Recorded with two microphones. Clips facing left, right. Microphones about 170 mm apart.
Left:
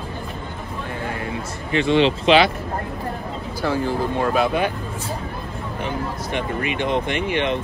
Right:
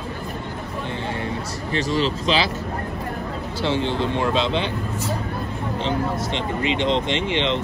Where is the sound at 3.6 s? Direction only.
25° right (ahead or behind).